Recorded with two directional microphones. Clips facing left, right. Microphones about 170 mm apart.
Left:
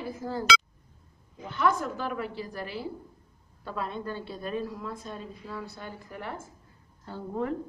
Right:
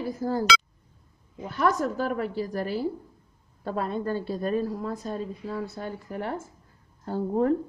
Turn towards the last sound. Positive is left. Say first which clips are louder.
# right 8 dB
turn(degrees=-40)  # may be behind; listen again after turning